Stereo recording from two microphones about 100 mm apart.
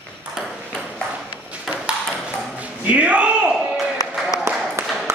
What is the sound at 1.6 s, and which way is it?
Ping, 10° right (ahead or behind).